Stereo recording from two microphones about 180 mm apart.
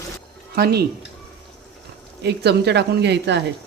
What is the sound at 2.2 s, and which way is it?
Speech, 65° right (ahead or behind).